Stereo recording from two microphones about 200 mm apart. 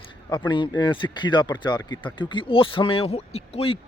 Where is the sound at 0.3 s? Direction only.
25° left (ahead or behind).